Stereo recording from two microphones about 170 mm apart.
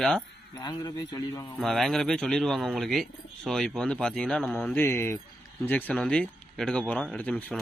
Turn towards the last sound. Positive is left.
turn(degrees=5)  # may be behind; listen again after turning